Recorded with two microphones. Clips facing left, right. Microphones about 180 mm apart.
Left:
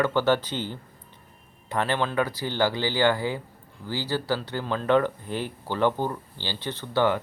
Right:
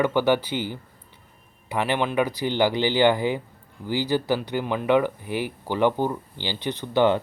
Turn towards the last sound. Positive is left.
turn(degrees=-20)  # may be behind; listen again after turning